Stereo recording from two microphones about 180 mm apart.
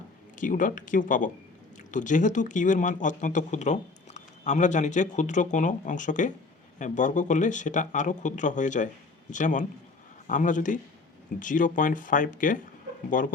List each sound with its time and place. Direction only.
0.3 s speech: 45° left (ahead or behind)